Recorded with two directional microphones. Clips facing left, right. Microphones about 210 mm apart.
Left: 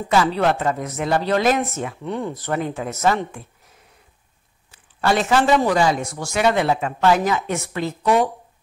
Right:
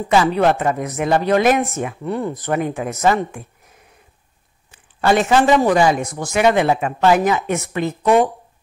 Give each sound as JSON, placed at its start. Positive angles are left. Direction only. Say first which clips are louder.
{"t": 0.1, "sound": "speech", "louder": "right 3 dB", "side_deg": -15}
{"t": 5.0, "sound": "a man's voice", "louder": "right 3 dB", "side_deg": -20}